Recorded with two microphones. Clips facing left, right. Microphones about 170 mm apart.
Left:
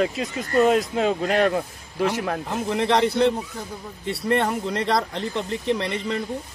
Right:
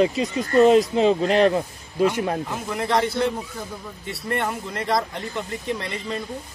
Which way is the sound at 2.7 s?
30° left (ahead or behind).